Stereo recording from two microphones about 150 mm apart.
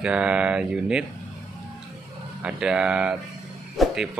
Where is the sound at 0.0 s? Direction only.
5° right (ahead or behind).